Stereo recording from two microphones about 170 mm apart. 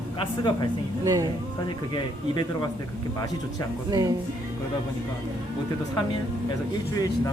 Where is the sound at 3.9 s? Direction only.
20° right (ahead or behind).